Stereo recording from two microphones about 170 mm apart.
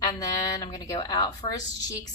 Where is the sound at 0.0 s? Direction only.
20° left (ahead or behind).